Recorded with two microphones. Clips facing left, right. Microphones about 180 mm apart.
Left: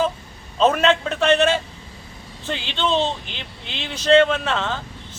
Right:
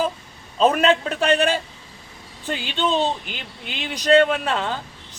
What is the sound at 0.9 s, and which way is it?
Speech, 35° right (ahead or behind).